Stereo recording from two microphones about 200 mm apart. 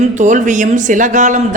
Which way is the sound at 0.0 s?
40° right (ahead or behind).